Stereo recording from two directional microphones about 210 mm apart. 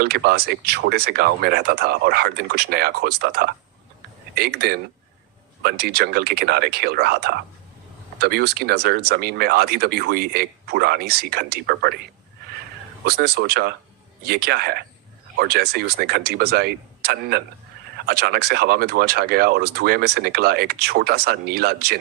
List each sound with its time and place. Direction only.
0.0 s speech: 45° right (ahead or behind)
13.1 s speech: 50° right (ahead or behind)